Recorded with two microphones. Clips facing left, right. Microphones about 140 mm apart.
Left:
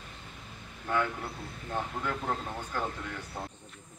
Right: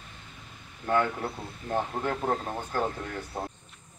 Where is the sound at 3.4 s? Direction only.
50° right (ahead or behind).